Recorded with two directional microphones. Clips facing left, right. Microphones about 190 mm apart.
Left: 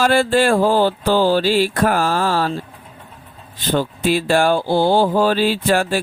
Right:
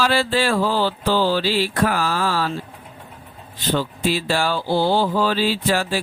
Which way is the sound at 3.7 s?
50° left (ahead or behind).